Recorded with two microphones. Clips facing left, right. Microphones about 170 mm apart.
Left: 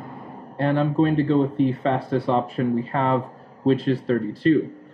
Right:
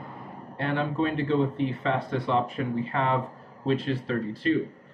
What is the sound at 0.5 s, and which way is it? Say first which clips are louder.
Speech: left 7 dB; 40° left (ahead or behind).